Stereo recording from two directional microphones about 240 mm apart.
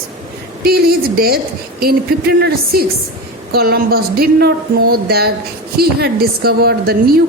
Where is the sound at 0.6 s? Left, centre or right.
Right.